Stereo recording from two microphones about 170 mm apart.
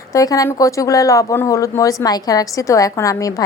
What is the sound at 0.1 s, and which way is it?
Speech, 20° left (ahead or behind).